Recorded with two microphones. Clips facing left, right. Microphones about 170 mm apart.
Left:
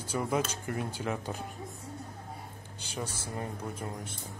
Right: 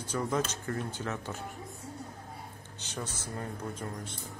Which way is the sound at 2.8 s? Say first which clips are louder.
Left 1 dB; 10° left (ahead or behind).